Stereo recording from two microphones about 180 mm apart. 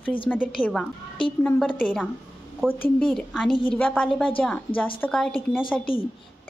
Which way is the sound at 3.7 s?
10° left (ahead or behind).